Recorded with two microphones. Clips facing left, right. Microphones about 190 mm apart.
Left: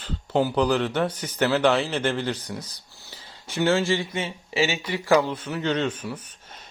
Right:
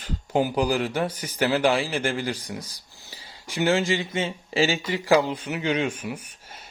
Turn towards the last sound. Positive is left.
turn(degrees=-10)  # may be behind; listen again after turning